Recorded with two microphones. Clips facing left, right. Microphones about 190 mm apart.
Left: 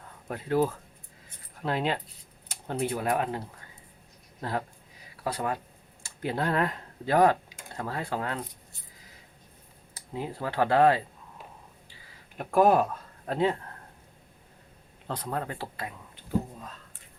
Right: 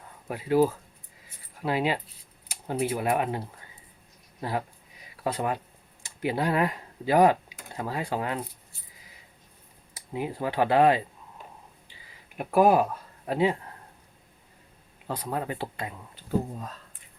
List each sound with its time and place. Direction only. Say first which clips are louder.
0.3 s speech: right 3 dB; 10° right (ahead or behind)
9.9 s speech: right 3 dB; 15° right (ahead or behind)
12.4 s speech: right 1 dB; 10° right (ahead or behind)
15.0 s speech: right 2 dB; 10° right (ahead or behind)